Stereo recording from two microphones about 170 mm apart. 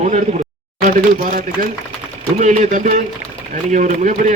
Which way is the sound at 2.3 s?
45° right (ahead or behind).